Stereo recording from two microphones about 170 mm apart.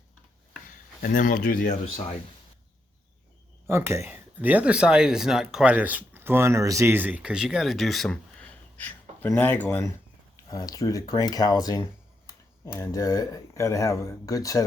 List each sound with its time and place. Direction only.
0.7 s speech: 55° left (ahead or behind)
3.7 s speech: 15° right (ahead or behind); by 14.6 s 20° left (ahead or behind)